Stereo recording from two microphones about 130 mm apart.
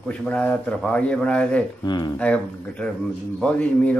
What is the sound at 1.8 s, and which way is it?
Speech, 30° left (ahead or behind).